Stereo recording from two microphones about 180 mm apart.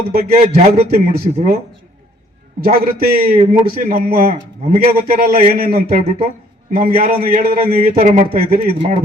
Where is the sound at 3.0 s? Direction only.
55° right (ahead or behind).